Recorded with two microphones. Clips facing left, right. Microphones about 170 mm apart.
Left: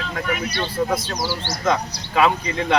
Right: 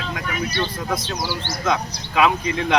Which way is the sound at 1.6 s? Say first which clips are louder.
Left 2 dB; centre (ahead or behind).